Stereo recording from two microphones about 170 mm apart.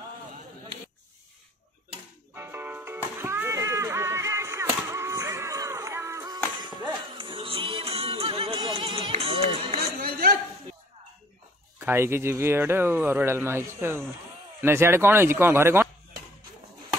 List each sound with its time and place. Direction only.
2.3 s music: 15° right (ahead or behind); by 9.8 s 35° right (ahead or behind)
9.9 s a sound: 60° right (ahead or behind)
11.8 s speech: 15° right (ahead or behind)